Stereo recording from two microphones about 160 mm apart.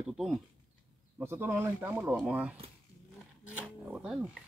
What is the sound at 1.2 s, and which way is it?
Speech, 15° right (ahead or behind).